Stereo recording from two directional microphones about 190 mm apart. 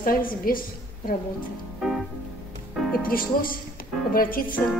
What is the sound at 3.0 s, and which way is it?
A woman's voice, 50° left (ahead or behind).